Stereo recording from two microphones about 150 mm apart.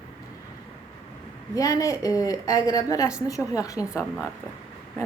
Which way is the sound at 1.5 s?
25° left (ahead or behind).